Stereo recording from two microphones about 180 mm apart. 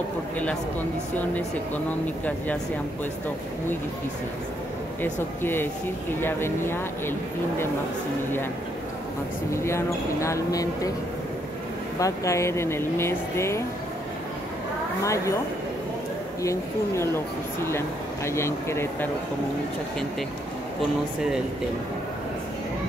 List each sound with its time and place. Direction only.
5.0 s speech: 10° left (ahead or behind)
9.5 s speech: 15° left (ahead or behind)
12.0 s speech: 15° left (ahead or behind)
15.0 s speech: 15° left (ahead or behind)
16.4 s speech: 15° left (ahead or behind)